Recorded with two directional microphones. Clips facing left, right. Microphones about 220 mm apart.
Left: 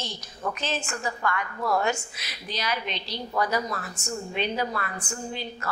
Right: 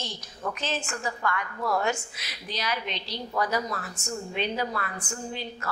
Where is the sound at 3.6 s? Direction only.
25° left (ahead or behind).